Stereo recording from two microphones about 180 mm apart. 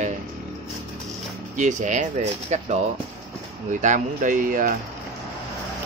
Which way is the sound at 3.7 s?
45° right (ahead or behind).